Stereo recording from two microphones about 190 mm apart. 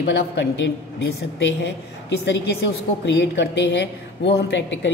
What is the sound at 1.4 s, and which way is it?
A woman's voice, 65° left (ahead or behind).